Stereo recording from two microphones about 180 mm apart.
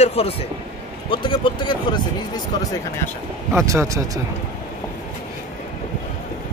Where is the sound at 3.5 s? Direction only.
15° right (ahead or behind).